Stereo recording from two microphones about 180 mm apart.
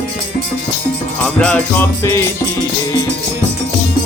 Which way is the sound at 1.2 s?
5° left (ahead or behind).